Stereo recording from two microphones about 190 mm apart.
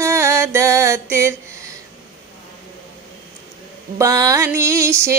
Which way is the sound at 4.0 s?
20° right (ahead or behind).